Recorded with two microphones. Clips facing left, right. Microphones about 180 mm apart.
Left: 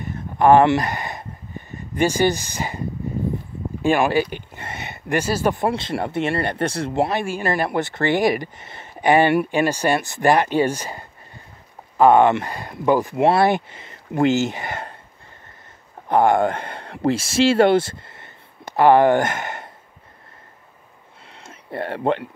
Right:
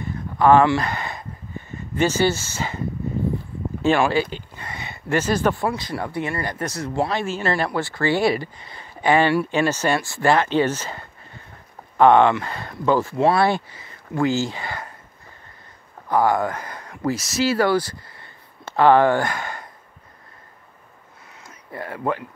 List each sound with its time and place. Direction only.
0.0 s a sound: 20° left (ahead or behind)
2.0 s speech: 15° left (ahead or behind)
3.8 s speech: 15° left (ahead or behind)
5.6 s speech: 25° left (ahead or behind)
6.9 s speech: 20° left (ahead or behind)
12.0 s speech: 10° left (ahead or behind)
16.1 s speech: 25° left (ahead or behind)
21.3 s a sound: 25° left (ahead or behind)